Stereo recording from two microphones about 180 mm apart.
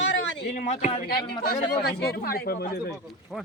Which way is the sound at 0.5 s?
40° left (ahead or behind).